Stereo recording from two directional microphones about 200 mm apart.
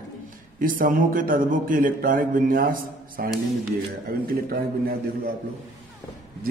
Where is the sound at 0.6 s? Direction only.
45° right (ahead or behind).